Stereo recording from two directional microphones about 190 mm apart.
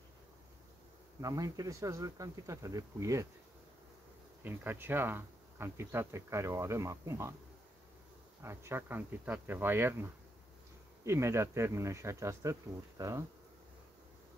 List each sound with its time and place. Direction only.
1.2 s speech: 20° right (ahead or behind)
4.5 s speech: 10° right (ahead or behind)
8.4 s speech: 15° right (ahead or behind)
11.1 s speech: 15° right (ahead or behind)